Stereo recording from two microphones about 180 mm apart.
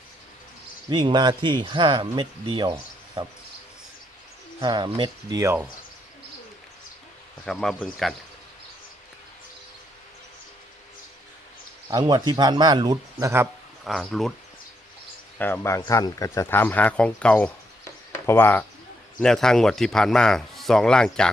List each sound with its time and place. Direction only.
0.9 s speech: 25° right (ahead or behind)
4.6 s speech: 25° right (ahead or behind)
7.4 s a man's voice: centre (ahead or behind)
11.9 s speech: 20° right (ahead or behind)
13.1 s speech: 10° right (ahead or behind)
13.8 s a man's voice: centre (ahead or behind)
15.4 s a man's voice: 10° left (ahead or behind)